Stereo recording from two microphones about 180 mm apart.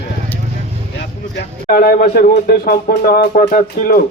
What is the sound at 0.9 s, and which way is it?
A man's voice, 60° left (ahead or behind).